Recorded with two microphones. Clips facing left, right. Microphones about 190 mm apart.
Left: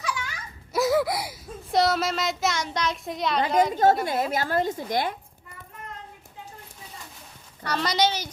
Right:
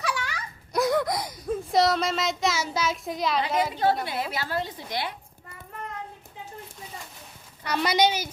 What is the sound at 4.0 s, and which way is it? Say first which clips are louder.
A woman's voice: left 5 dB; 45° left (ahead or behind).